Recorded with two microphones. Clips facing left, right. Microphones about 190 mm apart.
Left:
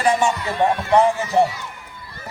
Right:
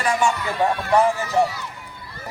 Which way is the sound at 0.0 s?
25° left (ahead or behind).